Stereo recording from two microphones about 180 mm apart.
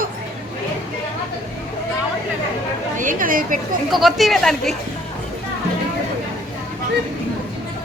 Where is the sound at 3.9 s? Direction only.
Centre (ahead or behind).